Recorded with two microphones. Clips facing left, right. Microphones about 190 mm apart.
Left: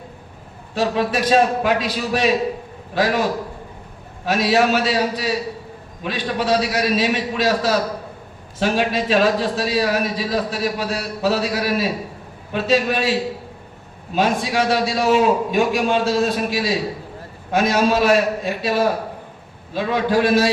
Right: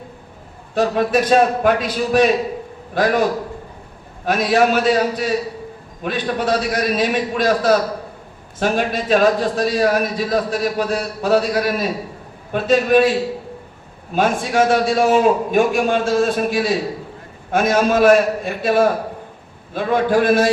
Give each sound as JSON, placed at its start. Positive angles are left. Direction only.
{"t": 0.7, "sound": "a man's voice", "side_deg": -50}
{"t": 4.3, "sound": "a man's voice", "side_deg": -50}
{"t": 14.2, "sound": "a man's voice", "side_deg": -50}